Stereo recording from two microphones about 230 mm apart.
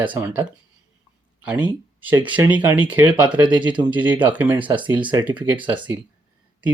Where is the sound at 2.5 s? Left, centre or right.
Centre.